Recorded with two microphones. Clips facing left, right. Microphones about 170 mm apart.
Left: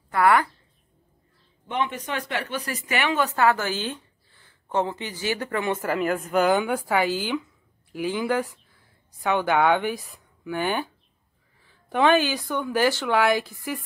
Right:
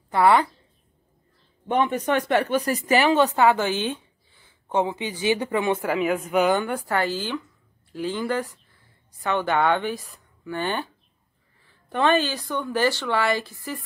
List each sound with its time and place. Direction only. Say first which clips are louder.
0.1 s a woman's voice: right 2 dB; 20° right (ahead or behind)
1.7 s speech: right 6 dB; 45° right (ahead or behind)
3.3 s a woman's voice: right 2 dB; 20° right (ahead or behind)
5.8 s a man's voice: right 1 dB; centre (ahead or behind)
11.9 s a woman's voice: left 1 dB; 10° left (ahead or behind)